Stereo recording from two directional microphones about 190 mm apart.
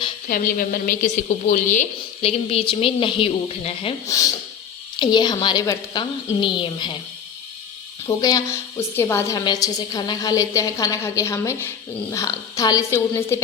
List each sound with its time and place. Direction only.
0.3 s a woman's voice: 50° left (ahead or behind); by 3.9 s 30° left (ahead or behind)
4.0 s a woman's voice: 15° left (ahead or behind)
8.0 s a woman's voice: 20° left (ahead or behind)